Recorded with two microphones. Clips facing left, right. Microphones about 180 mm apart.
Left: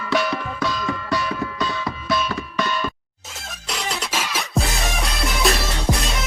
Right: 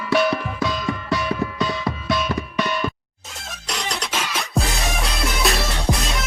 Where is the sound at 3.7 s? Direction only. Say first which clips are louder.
Even; centre (ahead or behind).